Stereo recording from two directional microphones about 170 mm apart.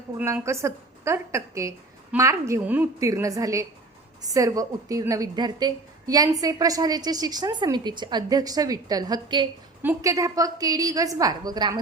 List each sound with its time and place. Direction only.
0.2 s a woman's voice: 15° right (ahead or behind)